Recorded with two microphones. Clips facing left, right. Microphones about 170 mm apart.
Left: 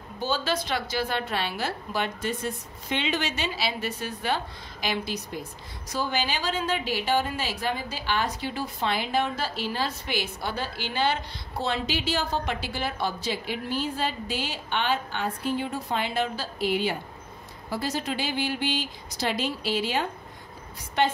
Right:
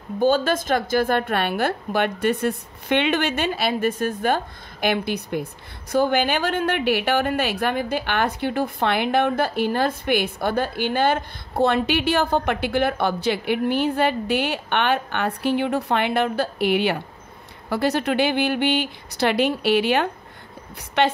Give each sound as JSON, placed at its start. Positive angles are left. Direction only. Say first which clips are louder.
{"t": 0.2, "sound": "a woman's voice", "louder": "right 9 dB", "side_deg": -50}